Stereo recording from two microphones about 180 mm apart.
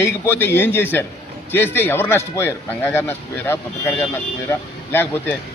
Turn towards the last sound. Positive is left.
turn(degrees=10)  # may be behind; listen again after turning